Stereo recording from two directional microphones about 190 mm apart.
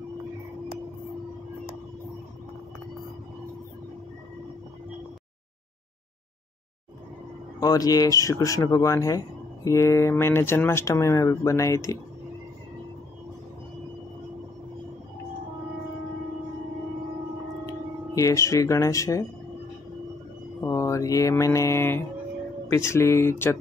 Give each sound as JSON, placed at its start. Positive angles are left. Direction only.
{"t": 7.6, "sound": "speech", "side_deg": 20}
{"t": 18.1, "sound": "speech", "side_deg": 15}
{"t": 20.6, "sound": "mantra", "side_deg": 15}
{"t": 22.7, "sound": "speech", "side_deg": 15}